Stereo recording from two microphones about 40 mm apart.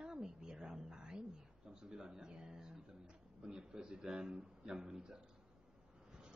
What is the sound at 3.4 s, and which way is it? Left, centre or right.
A man's voice, centre.